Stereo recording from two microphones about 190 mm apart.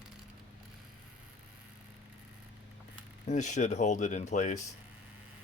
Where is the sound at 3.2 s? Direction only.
40° left (ahead or behind).